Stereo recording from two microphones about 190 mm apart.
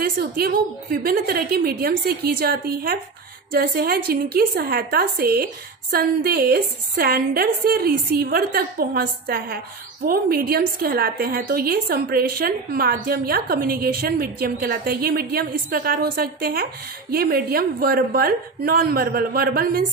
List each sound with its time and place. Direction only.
0.0 s a woman's voice: 55° right (ahead or behind)